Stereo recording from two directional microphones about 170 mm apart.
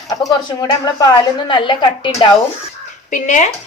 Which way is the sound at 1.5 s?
30° left (ahead or behind).